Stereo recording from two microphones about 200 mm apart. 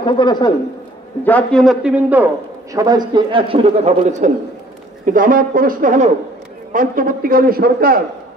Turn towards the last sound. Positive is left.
turn(degrees=-45)  # may be behind; listen again after turning